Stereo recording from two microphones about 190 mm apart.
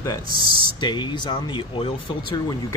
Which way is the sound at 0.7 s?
25° left (ahead or behind).